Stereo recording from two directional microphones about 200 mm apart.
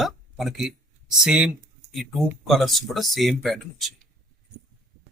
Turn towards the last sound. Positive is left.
turn(degrees=0)  # may be behind; listen again after turning